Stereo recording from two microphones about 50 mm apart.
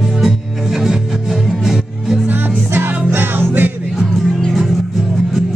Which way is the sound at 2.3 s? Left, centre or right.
Right.